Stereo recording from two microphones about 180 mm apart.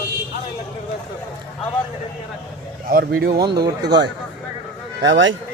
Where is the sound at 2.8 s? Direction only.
55° right (ahead or behind).